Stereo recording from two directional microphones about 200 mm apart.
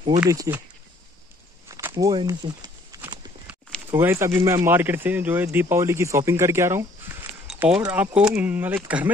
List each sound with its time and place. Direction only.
0.2 s speech: 15° right (ahead or behind)
1.7 s walk: 15° right (ahead or behind)
2.0 s speech: 25° right (ahead or behind)
7.4 s a sound: 5° right (ahead or behind)
7.9 s speech: 5° right (ahead or behind)